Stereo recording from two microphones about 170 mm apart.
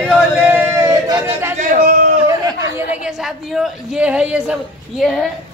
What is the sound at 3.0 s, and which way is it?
A woman's voice, 5° right (ahead or behind).